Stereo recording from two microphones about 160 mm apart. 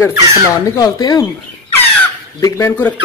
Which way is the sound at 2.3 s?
20° left (ahead or behind).